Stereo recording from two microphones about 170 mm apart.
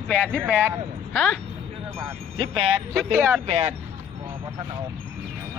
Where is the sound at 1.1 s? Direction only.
5° left (ahead or behind).